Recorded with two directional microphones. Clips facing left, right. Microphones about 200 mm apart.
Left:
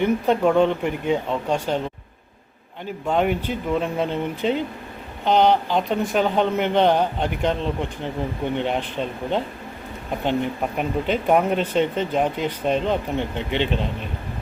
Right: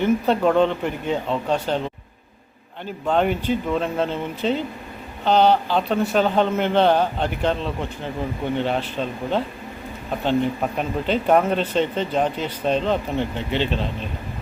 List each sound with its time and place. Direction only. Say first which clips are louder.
0.0 s speech: even; 10° left (ahead or behind)
3.1 s speech: right 1 dB; 10° left (ahead or behind)
10.8 s speech: left 3 dB; 10° left (ahead or behind)